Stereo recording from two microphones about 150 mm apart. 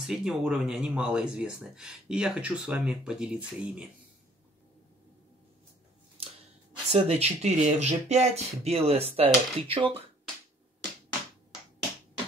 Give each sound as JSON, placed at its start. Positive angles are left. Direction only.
{"t": 0.0, "sound": "speech", "side_deg": -5}
{"t": 6.2, "sound": "scissors", "side_deg": -40}
{"t": 6.9, "sound": "speech", "side_deg": -45}